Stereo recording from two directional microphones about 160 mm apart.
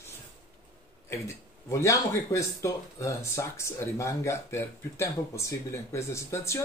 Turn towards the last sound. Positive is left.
turn(degrees=15)  # may be behind; listen again after turning